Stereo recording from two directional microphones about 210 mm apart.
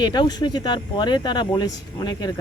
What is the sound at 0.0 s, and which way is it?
Speech, 20° left (ahead or behind).